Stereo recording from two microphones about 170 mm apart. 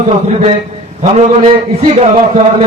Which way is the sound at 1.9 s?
40° right (ahead or behind).